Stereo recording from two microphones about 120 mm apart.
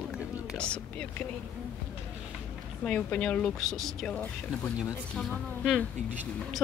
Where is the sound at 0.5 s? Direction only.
10° left (ahead or behind).